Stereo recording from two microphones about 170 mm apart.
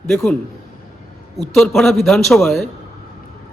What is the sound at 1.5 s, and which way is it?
A man's voice, 5° left (ahead or behind).